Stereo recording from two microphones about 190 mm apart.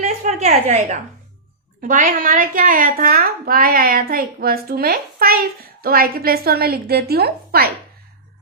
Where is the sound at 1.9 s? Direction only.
45° right (ahead or behind).